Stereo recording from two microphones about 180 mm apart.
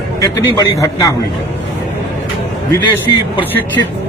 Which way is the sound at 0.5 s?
20° left (ahead or behind).